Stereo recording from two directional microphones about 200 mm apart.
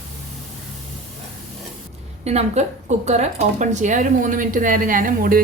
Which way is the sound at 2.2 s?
35° right (ahead or behind).